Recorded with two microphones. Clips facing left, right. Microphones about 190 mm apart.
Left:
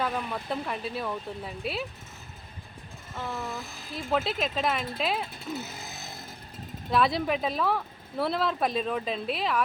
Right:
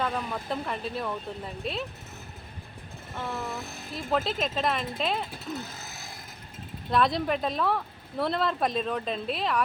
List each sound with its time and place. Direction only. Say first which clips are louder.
0.0 s speech: even; 5° left (ahead or behind)
3.9 s speech: even; centre (ahead or behind)
6.9 s speech: even; centre (ahead or behind)